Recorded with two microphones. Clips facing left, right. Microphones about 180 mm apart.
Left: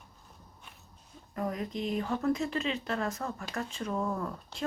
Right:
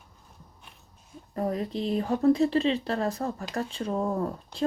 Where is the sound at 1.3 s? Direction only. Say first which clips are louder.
Right 5 dB; 35° right (ahead or behind).